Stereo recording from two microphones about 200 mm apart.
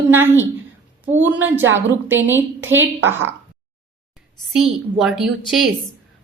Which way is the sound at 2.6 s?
75° right (ahead or behind).